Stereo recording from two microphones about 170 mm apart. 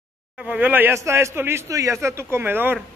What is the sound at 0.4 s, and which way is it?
Speech, 10° right (ahead or behind).